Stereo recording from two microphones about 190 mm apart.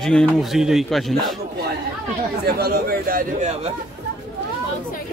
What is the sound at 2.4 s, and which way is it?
Speech, 55° right (ahead or behind).